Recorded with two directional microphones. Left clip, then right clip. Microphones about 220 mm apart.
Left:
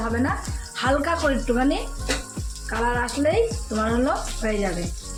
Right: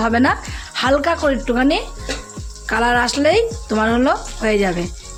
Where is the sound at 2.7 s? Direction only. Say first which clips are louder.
Right 8 dB; 50° right (ahead or behind).